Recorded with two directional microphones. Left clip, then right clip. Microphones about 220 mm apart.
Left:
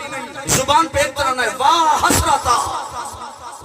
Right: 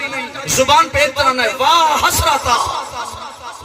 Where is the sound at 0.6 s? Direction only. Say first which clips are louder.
Right 4 dB; 55° left (ahead or behind).